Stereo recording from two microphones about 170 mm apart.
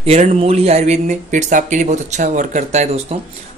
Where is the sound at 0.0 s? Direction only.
40° right (ahead or behind).